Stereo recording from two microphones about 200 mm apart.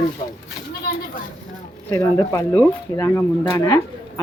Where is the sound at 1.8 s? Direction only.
15° left (ahead or behind).